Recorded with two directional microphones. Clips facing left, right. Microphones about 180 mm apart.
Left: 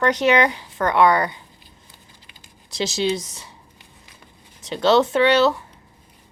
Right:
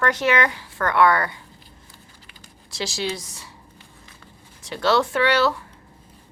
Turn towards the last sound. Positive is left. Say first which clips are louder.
# left 4 dB
turn(degrees=20)  # may be behind; listen again after turning